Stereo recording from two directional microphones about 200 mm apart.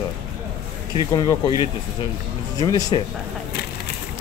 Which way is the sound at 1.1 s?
20° left (ahead or behind).